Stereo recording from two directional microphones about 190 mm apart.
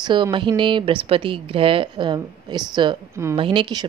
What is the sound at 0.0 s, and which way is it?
A woman's voice, 25° right (ahead or behind).